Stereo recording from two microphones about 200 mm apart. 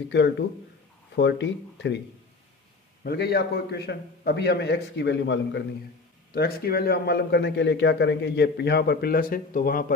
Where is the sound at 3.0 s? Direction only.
55° left (ahead or behind).